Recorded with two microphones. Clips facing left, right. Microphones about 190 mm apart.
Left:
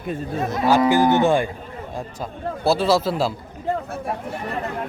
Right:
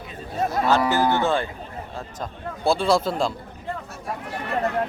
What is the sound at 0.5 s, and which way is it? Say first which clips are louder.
Cattle: left 4 dB; 20° left (ahead or behind).